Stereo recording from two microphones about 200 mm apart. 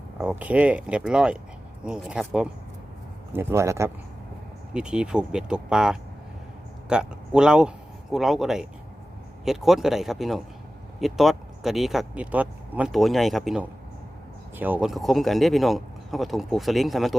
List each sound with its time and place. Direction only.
0.2 s a man's voice: 5° right (ahead or behind)